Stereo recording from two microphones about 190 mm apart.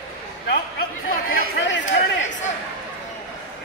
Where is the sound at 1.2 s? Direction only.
65° left (ahead or behind).